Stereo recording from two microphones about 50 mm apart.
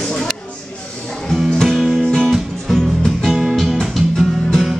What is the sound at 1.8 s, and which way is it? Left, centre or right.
Music, centre.